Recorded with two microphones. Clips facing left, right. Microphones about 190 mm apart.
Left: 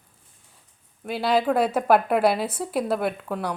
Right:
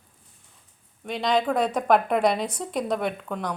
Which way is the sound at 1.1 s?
5° left (ahead or behind).